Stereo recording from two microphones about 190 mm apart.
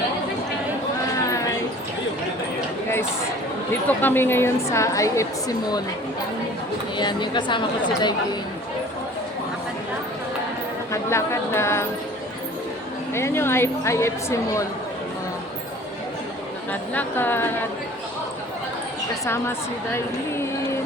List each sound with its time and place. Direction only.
3.8 s a woman's voice: 10° left (ahead or behind)
6.9 s a woman's voice: 25° left (ahead or behind)
10.9 s a woman's voice: 15° left (ahead or behind)
13.1 s a woman's voice: 15° left (ahead or behind)
16.9 s a woman's voice: 10° left (ahead or behind)
19.2 s a woman's voice: 10° left (ahead or behind)